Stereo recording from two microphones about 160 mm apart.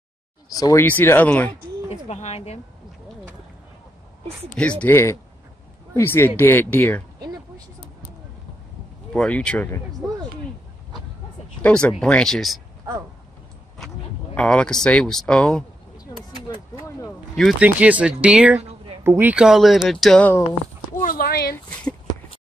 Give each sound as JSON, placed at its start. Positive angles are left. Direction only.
{"t": 0.5, "sound": "speech", "side_deg": 20}
{"t": 0.8, "sound": "speech", "side_deg": 10}
{"t": 1.9, "sound": "speech", "side_deg": 45}
{"t": 4.6, "sound": "speech", "side_deg": 5}
{"t": 9.1, "sound": "speech", "side_deg": 5}
{"t": 11.6, "sound": "speech", "side_deg": 5}
{"t": 14.3, "sound": "speech", "side_deg": 5}
{"t": 16.7, "sound": "speech", "side_deg": 20}
{"t": 17.4, "sound": "speech", "side_deg": 0}
{"t": 21.0, "sound": "a sound", "side_deg": 65}